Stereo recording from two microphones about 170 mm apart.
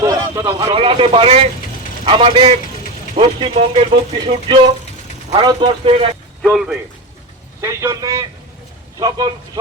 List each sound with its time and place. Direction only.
0.0 s a man's voice: 20° right (ahead or behind)
6.4 s speech: centre (ahead or behind)
7.6 s a man's voice: 15° right (ahead or behind)